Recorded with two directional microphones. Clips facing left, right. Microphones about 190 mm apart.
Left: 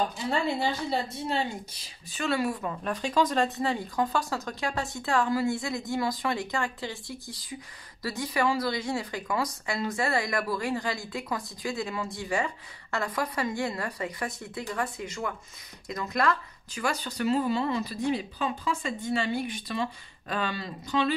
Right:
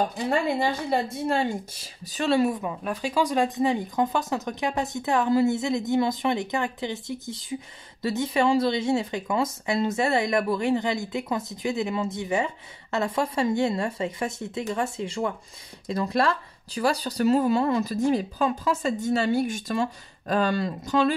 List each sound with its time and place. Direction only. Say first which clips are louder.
1.2 s speech: right 5 dB; 50° right (ahead or behind)